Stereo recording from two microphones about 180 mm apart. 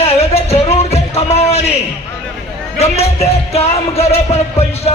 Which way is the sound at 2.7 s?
35° left (ahead or behind).